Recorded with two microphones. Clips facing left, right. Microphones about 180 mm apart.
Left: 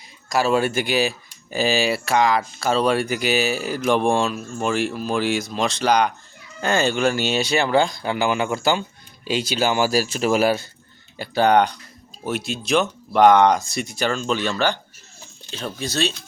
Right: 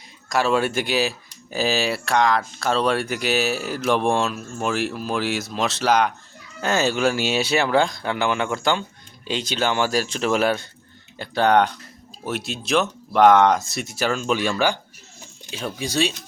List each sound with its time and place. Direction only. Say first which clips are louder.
0.3 s speech: left 1 dB; centre (ahead or behind)